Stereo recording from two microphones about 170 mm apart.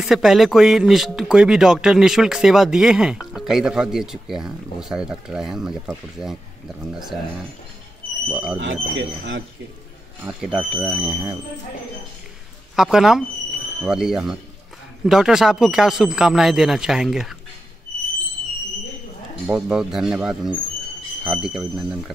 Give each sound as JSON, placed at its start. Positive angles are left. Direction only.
{"t": 0.0, "sound": "speech", "side_deg": 0}
{"t": 8.3, "sound": "speech", "side_deg": -5}
{"t": 8.5, "sound": "speech", "side_deg": -90}
{"t": 10.2, "sound": "speech", "side_deg": -5}
{"t": 12.7, "sound": "speech", "side_deg": 0}
{"t": 19.4, "sound": "speech", "side_deg": -5}